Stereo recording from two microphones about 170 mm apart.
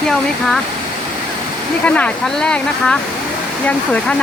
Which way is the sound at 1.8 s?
5° left (ahead or behind).